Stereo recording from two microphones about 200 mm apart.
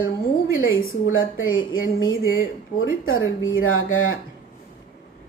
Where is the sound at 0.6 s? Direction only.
90° left.